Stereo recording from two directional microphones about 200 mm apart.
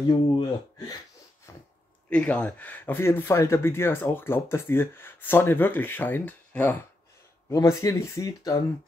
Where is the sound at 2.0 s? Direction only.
5° left (ahead or behind).